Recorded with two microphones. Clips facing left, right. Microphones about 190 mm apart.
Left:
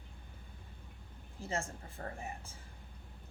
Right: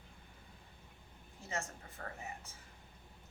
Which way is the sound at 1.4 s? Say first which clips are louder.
Left 4 dB; 30° left (ahead or behind).